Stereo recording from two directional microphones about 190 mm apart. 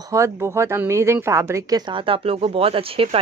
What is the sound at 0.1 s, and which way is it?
Speech, 15° right (ahead or behind).